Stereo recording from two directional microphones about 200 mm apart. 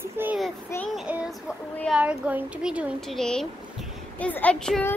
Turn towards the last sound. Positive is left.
turn(degrees=5)  # may be behind; listen again after turning